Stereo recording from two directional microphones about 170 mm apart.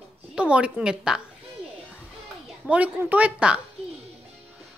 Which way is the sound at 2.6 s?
10° right (ahead or behind).